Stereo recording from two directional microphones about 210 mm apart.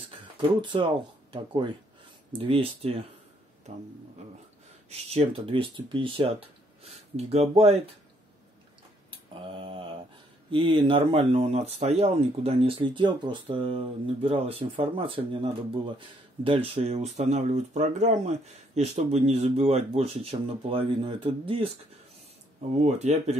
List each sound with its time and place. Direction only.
0.6 s speech: 20° right (ahead or behind)
9.1 s mantra: 25° right (ahead or behind)
10.5 s speech: 25° right (ahead or behind)
22.8 s speech: 30° right (ahead or behind)